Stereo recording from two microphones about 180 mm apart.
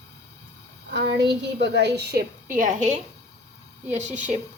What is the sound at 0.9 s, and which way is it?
A woman's voice, 70° right (ahead or behind).